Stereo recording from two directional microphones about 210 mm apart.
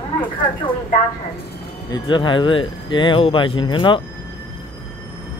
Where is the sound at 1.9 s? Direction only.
20° left (ahead or behind).